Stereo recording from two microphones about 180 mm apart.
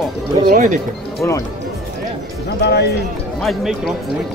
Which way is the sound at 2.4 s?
65° left (ahead or behind).